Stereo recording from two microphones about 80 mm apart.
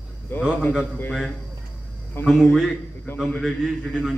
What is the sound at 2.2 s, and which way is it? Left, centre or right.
Speech, left.